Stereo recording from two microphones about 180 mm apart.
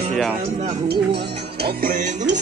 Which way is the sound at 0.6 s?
45° right (ahead or behind).